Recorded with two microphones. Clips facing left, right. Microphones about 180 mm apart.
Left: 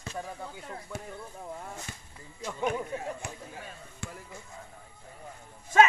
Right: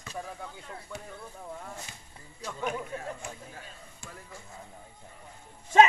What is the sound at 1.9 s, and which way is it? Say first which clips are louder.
Speech: left 5 dB; 55° left (ahead or behind).